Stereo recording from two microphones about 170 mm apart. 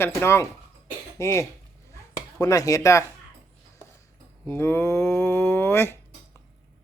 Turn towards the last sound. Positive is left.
turn(degrees=15)  # may be behind; listen again after turning